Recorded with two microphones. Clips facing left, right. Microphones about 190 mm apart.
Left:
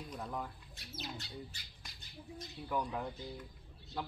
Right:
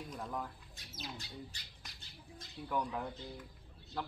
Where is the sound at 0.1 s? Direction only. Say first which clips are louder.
Left 1 dB; centre (ahead or behind).